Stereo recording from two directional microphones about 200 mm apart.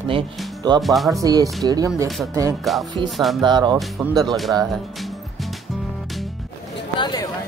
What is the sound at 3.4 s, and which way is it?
Speech, 20° right (ahead or behind).